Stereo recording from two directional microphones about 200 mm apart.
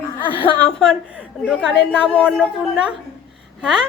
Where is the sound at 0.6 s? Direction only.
Centre (ahead or behind).